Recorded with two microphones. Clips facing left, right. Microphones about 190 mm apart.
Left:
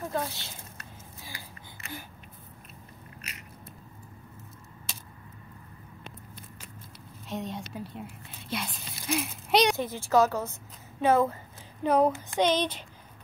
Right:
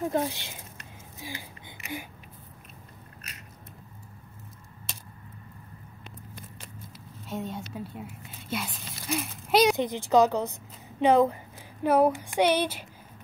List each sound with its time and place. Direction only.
0.1 s a sound: 15° right (ahead or behind)
7.2 s speech: 5° right (ahead or behind)
9.8 s a woman's voice: 15° right (ahead or behind)